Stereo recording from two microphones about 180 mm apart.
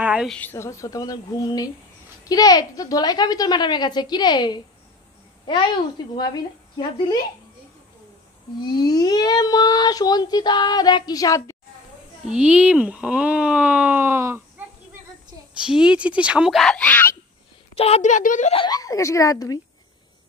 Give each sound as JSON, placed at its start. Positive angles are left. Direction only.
{"t": 0.0, "sound": "a sound", "side_deg": -5}
{"t": 0.3, "sound": "speech", "side_deg": 10}
{"t": 6.3, "sound": "speech", "side_deg": 25}
{"t": 8.5, "sound": "speech", "side_deg": 20}
{"t": 12.3, "sound": "speech", "side_deg": -5}
{"t": 15.6, "sound": "speech", "side_deg": -5}
{"t": 17.7, "sound": "a woman's voice", "side_deg": 35}
{"t": 18.5, "sound": "speech", "side_deg": 25}